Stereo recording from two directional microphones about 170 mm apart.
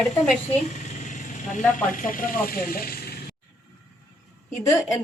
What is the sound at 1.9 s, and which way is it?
Speech, 55° left (ahead or behind).